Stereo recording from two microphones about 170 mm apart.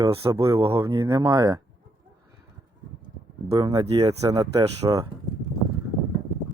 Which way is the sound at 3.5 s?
20° right (ahead or behind).